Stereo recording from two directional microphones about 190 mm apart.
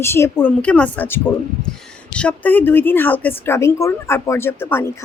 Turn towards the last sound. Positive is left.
turn(degrees=10)  # may be behind; listen again after turning